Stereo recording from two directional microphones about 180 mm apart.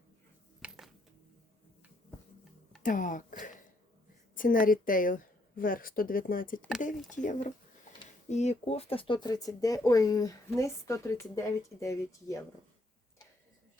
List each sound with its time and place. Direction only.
0.6 s music: 10° right (ahead or behind)
2.8 s a woman's voice: 45° left (ahead or behind)
6.9 s speech: centre (ahead or behind)
8.3 s speech: 40° left (ahead or behind); by 12.4 s 15° left (ahead or behind)